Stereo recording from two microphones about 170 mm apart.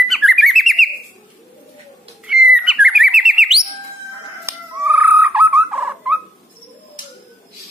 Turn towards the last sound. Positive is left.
turn(degrees=-5)  # may be behind; listen again after turning